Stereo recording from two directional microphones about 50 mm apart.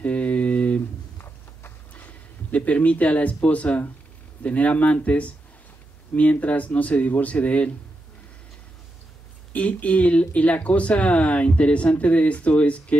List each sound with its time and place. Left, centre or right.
0.0 s a sound: left
1.1 s horse: left
2.0 s speech: left
9.5 s speech: left